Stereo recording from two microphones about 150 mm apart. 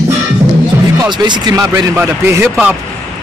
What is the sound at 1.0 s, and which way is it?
A man's voice, 30° right (ahead or behind).